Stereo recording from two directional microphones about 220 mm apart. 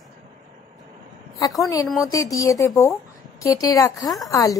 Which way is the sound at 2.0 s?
15° left (ahead or behind).